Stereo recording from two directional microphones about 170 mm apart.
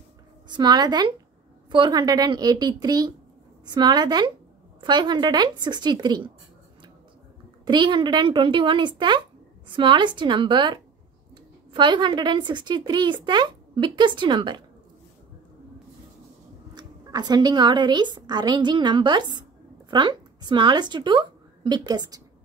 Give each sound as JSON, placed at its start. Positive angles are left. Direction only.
{"t": 0.5, "sound": "speech", "side_deg": -25}
{"t": 7.6, "sound": "speech", "side_deg": -25}
{"t": 16.7, "sound": "a woman's voice", "side_deg": -25}